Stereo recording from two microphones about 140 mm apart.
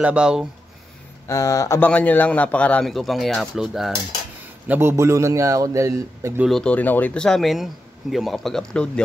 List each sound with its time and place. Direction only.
0.0 s speech: 5° right (ahead or behind)
1.2 s speech: 25° left (ahead or behind)
1.8 s a man's voice: 10° left (ahead or behind)
4.6 s a man's voice: 15° right (ahead or behind)
6.4 s speech: 5° left (ahead or behind)